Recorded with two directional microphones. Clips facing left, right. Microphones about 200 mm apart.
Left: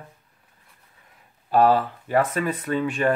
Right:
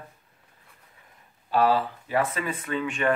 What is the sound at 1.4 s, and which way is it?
Speech, 45° left (ahead or behind).